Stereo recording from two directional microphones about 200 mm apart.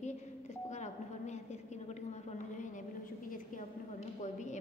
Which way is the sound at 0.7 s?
35° left (ahead or behind).